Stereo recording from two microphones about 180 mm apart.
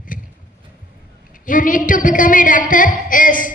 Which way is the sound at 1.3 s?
50° left (ahead or behind).